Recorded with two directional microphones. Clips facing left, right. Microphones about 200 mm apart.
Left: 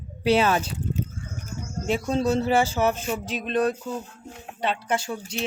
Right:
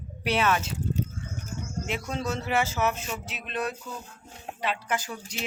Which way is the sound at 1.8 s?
35° left (ahead or behind).